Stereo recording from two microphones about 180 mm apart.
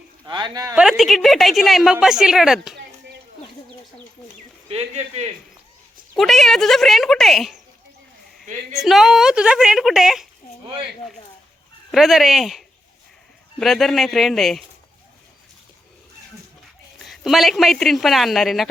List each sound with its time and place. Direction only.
0.3 s speech: 25° right (ahead or behind)
0.8 s a woman's voice: centre (ahead or behind)
4.7 s speech: 40° right (ahead or behind)
6.1 s a woman's voice: centre (ahead or behind)
8.8 s a woman's voice: centre (ahead or behind)
11.9 s a woman's voice: centre (ahead or behind)
17.0 s a woman's voice: centre (ahead or behind)